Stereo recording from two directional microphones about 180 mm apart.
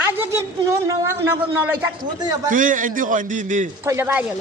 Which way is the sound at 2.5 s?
45° right (ahead or behind).